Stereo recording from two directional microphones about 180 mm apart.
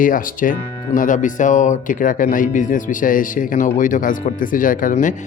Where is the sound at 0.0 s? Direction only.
50° left (ahead or behind).